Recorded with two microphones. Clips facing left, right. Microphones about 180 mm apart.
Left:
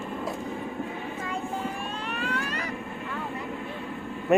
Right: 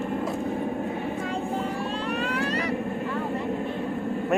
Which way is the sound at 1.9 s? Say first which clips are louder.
Right 6 dB; 35° right (ahead or behind).